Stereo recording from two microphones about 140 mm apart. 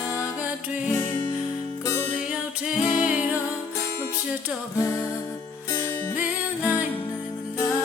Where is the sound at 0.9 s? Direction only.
30° left (ahead or behind).